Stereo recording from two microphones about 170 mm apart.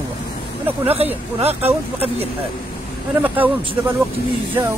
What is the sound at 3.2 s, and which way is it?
Speech, 10° right (ahead or behind).